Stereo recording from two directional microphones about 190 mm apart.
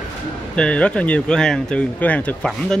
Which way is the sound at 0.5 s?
5° left (ahead or behind).